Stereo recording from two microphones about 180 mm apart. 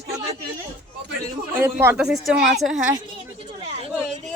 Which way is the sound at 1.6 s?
15° right (ahead or behind).